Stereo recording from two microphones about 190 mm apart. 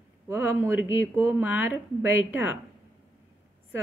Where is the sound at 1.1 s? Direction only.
10° right (ahead or behind).